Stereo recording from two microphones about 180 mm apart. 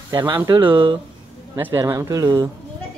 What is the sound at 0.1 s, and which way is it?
Speech, 25° right (ahead or behind).